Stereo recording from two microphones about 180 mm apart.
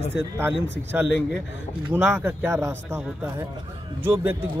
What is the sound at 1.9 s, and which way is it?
Speech, 10° right (ahead or behind).